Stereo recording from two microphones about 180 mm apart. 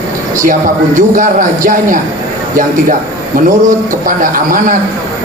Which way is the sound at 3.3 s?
50° right (ahead or behind).